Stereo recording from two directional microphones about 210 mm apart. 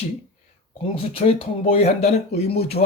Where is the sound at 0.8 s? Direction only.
25° left (ahead or behind).